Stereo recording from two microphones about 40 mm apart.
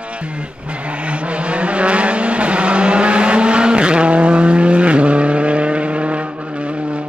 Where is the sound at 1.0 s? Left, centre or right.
Right.